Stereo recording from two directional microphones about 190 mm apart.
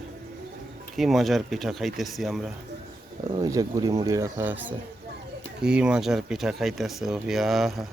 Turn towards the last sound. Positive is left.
turn(degrees=0)  # may be behind; listen again after turning